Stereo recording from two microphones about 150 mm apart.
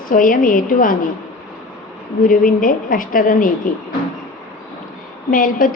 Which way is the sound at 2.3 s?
65° left (ahead or behind).